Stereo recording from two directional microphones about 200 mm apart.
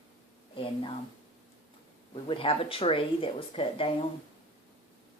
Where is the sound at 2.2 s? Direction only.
25° left (ahead or behind).